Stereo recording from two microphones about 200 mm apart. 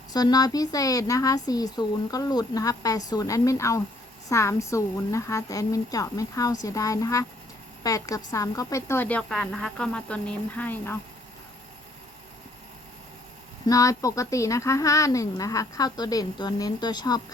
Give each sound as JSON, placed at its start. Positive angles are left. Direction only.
{"t": 0.1, "sound": "a woman's voice", "side_deg": 20}
{"t": 13.7, "sound": "a woman's voice", "side_deg": 15}